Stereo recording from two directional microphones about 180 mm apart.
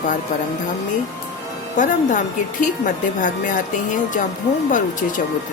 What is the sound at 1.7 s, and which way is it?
A woman's voice, 45° left (ahead or behind).